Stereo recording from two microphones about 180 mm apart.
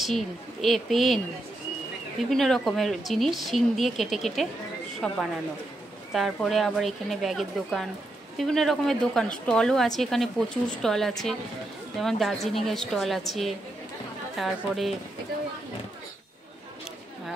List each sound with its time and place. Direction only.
0.0 s speech: centre (ahead or behind)
2.2 s speech: centre (ahead or behind)